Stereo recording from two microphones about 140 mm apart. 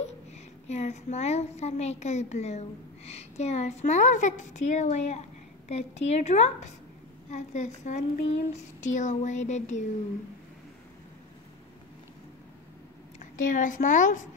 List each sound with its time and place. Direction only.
0.7 s a woman's voice: 55° left (ahead or behind)
13.2 s a woman's voice: 65° left (ahead or behind)